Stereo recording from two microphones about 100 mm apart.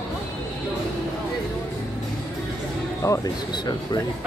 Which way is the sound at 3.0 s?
30° left (ahead or behind).